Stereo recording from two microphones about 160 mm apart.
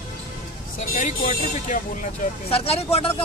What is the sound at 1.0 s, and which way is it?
Speech, 55° left (ahead or behind).